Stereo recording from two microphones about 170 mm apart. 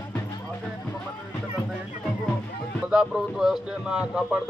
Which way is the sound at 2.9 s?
5° right (ahead or behind).